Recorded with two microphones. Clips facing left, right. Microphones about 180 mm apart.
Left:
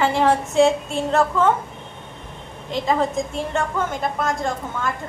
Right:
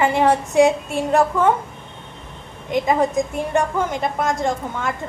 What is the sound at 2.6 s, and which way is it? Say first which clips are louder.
A woman's voice: right 3 dB; 15° right (ahead or behind).